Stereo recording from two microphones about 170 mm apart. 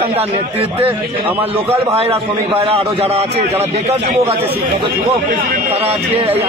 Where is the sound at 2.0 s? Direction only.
35° right (ahead or behind).